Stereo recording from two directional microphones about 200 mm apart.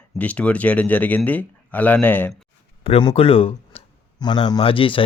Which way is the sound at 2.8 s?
25° left (ahead or behind).